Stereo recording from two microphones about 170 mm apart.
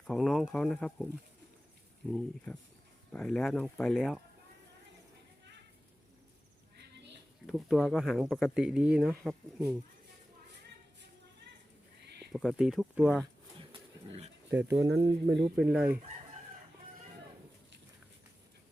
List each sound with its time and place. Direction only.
0.1 s speech: centre (ahead or behind)
2.0 s speech: 5° left (ahead or behind)
7.4 s speech: centre (ahead or behind)
12.3 s speech: centre (ahead or behind)
14.5 s speech: 15° right (ahead or behind)